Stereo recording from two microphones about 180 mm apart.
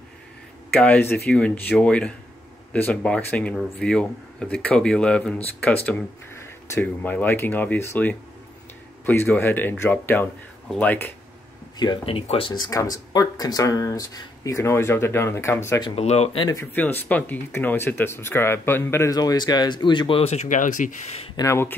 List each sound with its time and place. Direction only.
0.7 s speech: 10° left (ahead or behind)
11.8 s speech: 30° left (ahead or behind)
15.9 s speech: 35° left (ahead or behind)
16.4 s speech: 10° left (ahead or behind); by 20.9 s 45° left (ahead or behind)
21.4 s speech: 15° left (ahead or behind)